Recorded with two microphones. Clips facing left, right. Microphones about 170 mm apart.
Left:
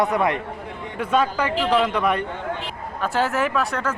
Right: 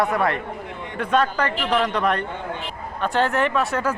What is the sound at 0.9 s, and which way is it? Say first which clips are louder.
A man's voice: even; 10° left (ahead or behind).